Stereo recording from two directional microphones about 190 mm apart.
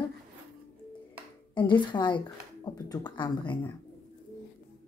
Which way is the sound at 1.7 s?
25° left (ahead or behind).